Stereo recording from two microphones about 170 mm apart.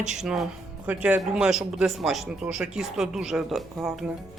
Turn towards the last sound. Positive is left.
turn(degrees=0)  # may be behind; listen again after turning